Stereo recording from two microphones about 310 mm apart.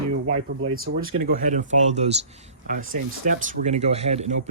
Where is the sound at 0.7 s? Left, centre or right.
Right.